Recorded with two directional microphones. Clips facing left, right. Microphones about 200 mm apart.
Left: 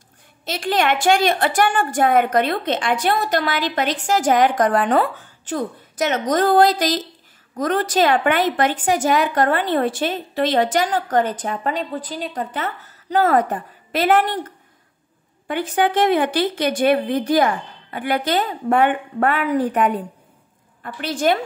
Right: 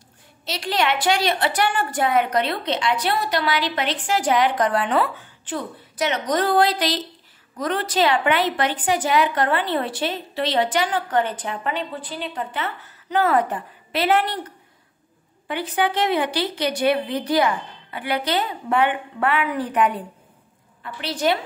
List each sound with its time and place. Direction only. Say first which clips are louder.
0.5 s a woman's voice: left 3 dB; 50° left (ahead or behind)
15.4 s a woman's voice: left 3 dB; 45° left (ahead or behind)